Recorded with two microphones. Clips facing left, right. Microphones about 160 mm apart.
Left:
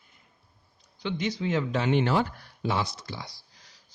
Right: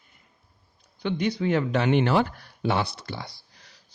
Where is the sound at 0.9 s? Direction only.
55° right (ahead or behind).